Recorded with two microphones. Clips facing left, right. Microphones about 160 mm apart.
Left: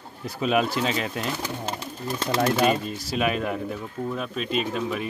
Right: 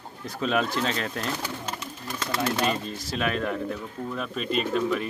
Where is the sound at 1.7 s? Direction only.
30° left (ahead or behind).